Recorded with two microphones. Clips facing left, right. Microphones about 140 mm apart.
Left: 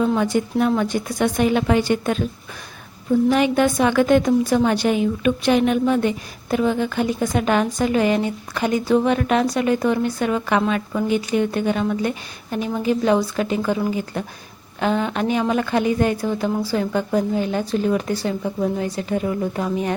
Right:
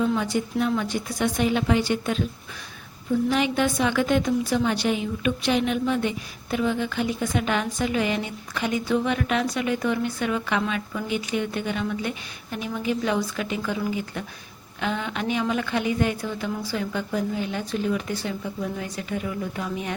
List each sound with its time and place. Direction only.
0.0 s a woman's voice: 50° left (ahead or behind)
3.2 s a woman's voice: 50° left (ahead or behind)